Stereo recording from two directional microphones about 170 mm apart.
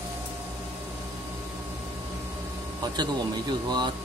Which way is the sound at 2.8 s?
25° right (ahead or behind).